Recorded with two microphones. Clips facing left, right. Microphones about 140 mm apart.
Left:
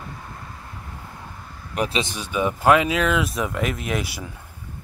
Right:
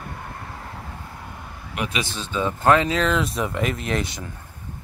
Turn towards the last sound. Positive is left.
turn(degrees=5)  # may be behind; listen again after turning